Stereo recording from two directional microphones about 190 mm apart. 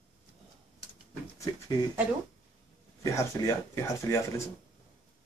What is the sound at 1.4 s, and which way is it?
Speech, 20° left (ahead or behind).